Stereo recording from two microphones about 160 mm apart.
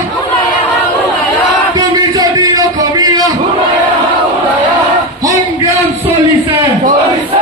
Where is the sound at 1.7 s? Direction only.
25° right (ahead or behind).